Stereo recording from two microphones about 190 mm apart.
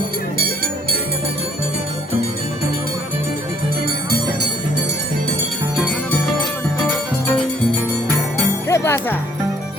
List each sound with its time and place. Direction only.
0.3 s music: 50° right (ahead or behind)
8.6 s music: 15° left (ahead or behind)